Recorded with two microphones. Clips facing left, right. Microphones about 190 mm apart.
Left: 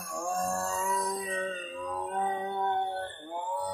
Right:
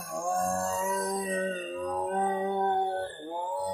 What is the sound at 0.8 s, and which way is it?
Music, 45° right (ahead or behind).